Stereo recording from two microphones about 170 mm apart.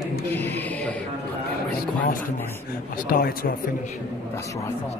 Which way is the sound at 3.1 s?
60° left (ahead or behind).